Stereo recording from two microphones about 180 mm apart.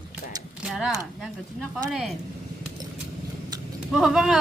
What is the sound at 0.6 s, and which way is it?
Speech, centre (ahead or behind).